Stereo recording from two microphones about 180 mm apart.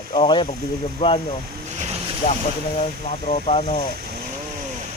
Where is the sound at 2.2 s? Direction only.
35° left (ahead or behind).